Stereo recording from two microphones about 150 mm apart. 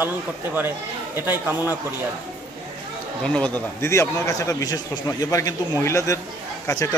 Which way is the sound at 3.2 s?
5° left (ahead or behind).